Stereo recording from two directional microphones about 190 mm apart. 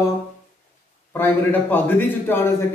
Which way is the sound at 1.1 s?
10° left (ahead or behind).